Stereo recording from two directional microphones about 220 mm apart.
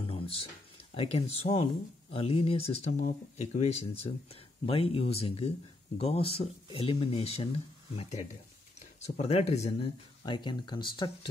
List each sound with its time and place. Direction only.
0.0 s speech: 25° left (ahead or behind)